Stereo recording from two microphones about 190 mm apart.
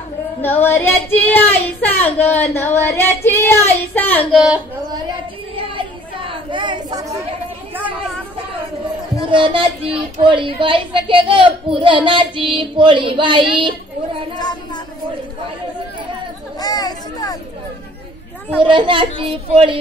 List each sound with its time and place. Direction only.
0.4 s child singing: 10° left (ahead or behind)
5.6 s chatter: 25° right (ahead or behind)
9.2 s music: 25° right (ahead or behind)
10.1 s a child's voice: 25° right (ahead or behind)
16.5 s a sound: 20° left (ahead or behind)
18.6 s a child's voice: 25° right (ahead or behind)